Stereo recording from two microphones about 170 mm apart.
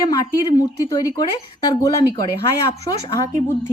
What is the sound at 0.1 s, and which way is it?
Speech, 20° left (ahead or behind).